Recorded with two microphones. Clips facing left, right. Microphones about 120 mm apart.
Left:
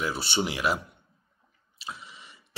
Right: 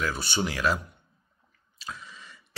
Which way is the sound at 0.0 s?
25° left (ahead or behind).